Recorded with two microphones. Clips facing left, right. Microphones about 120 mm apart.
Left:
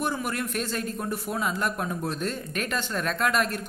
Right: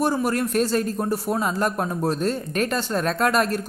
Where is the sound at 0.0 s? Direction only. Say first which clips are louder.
Right 7 dB; 35° right (ahead or behind).